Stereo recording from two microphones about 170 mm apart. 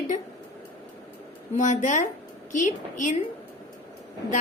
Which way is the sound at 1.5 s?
45° left (ahead or behind).